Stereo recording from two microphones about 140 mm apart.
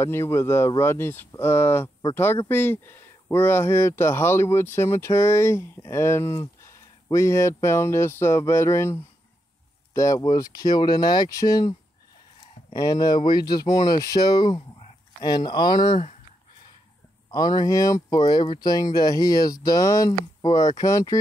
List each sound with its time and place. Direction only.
0.0 s speech: 20° left (ahead or behind)
12.7 s speech: 30° left (ahead or behind)
17.3 s speech: 30° left (ahead or behind)